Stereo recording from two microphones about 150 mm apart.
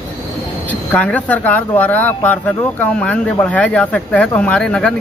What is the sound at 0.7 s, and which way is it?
Speech, 10° left (ahead or behind).